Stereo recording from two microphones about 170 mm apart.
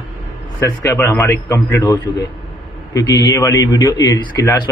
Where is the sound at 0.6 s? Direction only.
15° left (ahead or behind).